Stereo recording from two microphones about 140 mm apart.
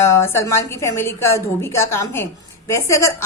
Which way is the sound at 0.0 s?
20° left (ahead or behind).